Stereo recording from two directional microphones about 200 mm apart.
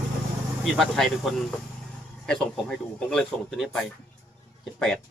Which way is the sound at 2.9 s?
Centre (ahead or behind).